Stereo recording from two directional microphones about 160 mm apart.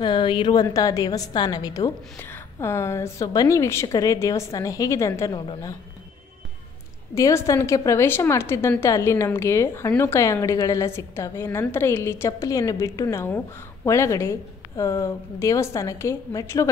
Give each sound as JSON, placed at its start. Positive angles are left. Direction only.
{"t": 0.0, "sound": "a woman's voice", "side_deg": 30}
{"t": 7.2, "sound": "a woman's voice", "side_deg": 20}